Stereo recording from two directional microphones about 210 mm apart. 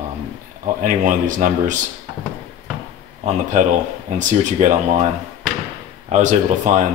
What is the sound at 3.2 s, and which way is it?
Speech, 35° right (ahead or behind).